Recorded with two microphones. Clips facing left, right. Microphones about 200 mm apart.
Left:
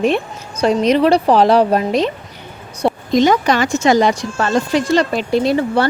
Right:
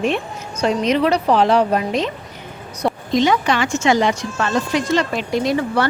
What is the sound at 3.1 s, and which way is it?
A woman's voice, 40° left (ahead or behind).